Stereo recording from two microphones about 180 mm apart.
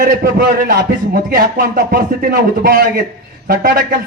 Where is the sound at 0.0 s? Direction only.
50° right (ahead or behind).